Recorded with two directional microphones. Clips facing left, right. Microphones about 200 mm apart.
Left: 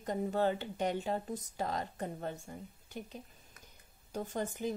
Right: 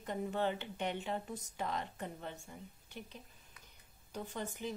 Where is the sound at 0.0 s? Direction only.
40° left (ahead or behind).